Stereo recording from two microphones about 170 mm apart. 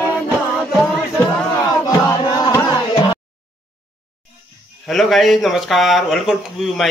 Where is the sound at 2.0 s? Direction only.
20° left (ahead or behind).